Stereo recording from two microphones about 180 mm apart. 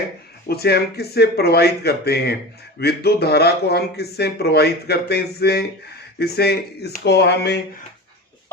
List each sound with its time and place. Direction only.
0.4 s speech: 60° left (ahead or behind)